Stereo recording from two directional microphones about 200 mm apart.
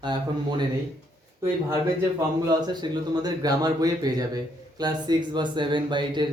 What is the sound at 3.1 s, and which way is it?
Speech, 20° right (ahead or behind).